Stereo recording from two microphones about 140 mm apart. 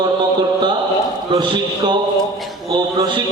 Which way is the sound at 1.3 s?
30° right (ahead or behind).